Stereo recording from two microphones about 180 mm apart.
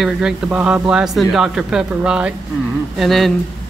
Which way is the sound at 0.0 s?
5° right (ahead or behind).